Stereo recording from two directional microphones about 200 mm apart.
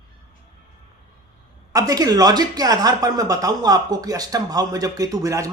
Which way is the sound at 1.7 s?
20° right (ahead or behind).